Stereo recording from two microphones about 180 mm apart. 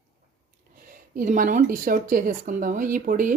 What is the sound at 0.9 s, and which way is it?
Speech, 45° right (ahead or behind).